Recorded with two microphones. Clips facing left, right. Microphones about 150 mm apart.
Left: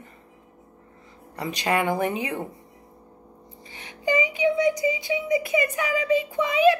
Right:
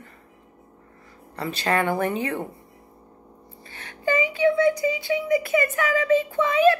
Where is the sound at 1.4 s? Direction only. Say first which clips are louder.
Right 1 dB; 15° left (ahead or behind).